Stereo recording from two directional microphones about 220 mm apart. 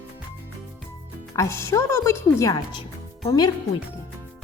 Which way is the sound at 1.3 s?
10° left (ahead or behind).